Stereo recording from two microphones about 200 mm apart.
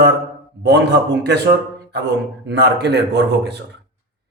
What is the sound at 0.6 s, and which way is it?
Speech, 55° right (ahead or behind).